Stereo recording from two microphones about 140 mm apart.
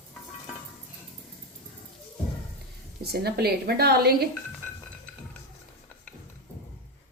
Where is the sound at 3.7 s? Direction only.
90° right.